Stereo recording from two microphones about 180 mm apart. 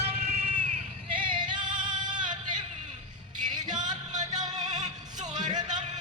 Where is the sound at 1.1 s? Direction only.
25° right (ahead or behind).